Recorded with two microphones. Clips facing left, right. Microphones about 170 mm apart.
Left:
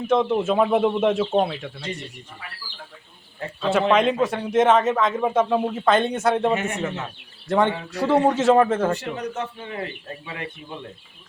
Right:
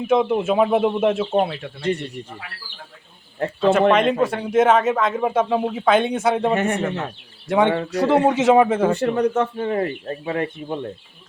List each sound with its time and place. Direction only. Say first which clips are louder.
0.1 s speech: right 2 dB; 10° right (ahead or behind)
1.8 s speech: right 14 dB; 60° right (ahead or behind)
3.4 s speech: right 7 dB; 60° right (ahead or behind)
3.9 s a man's voice: right 1 dB; 5° right (ahead or behind)
6.5 s speech: right 4 dB; 55° right (ahead or behind)
7.7 s speech: right 7 dB; 65° right (ahead or behind)
7.9 s a man's voice: right 1 dB; 15° right (ahead or behind)
9.0 s speech: right 10 dB; 55° right (ahead or behind)